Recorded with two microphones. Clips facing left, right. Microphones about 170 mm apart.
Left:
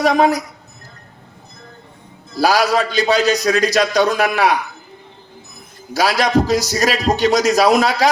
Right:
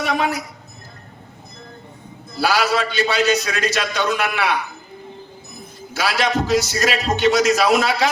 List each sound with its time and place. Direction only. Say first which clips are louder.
0.0 s a man's voice: left 7 dB; 40° left (ahead or behind)
2.4 s a man's voice: left 4 dB; 40° left (ahead or behind)
5.9 s a man's voice: left 5 dB; 40° left (ahead or behind)